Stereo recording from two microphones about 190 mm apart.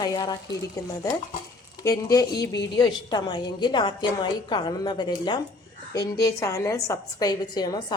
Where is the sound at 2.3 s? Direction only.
60° left (ahead or behind).